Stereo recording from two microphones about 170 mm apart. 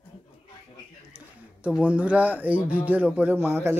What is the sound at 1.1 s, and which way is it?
Speech, 5° right (ahead or behind).